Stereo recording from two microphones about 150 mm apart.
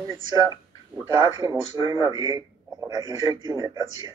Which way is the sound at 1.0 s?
25° right (ahead or behind).